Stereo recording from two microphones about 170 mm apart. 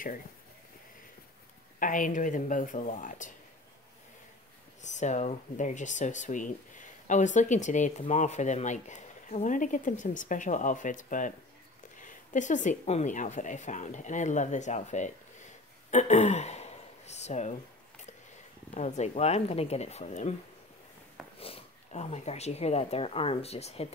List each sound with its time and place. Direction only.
1.8 s speech: 50° left (ahead or behind)
4.8 s speech: 45° left (ahead or behind)
18.8 s speech: 45° left (ahead or behind)
21.4 s speech: 35° left (ahead or behind)